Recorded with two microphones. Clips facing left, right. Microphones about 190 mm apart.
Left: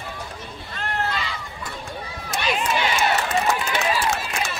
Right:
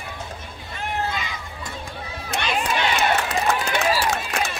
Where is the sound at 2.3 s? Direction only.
65° right (ahead or behind).